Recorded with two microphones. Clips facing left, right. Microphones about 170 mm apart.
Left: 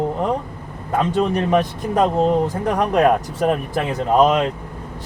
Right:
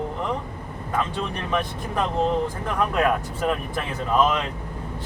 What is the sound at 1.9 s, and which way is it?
A man's voice, 45° left (ahead or behind).